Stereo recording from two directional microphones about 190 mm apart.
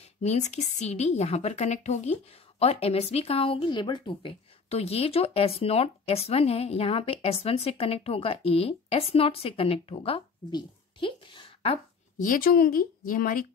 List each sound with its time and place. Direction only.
0.0 s speech: 35° left (ahead or behind)
12.3 s speech: 50° left (ahead or behind)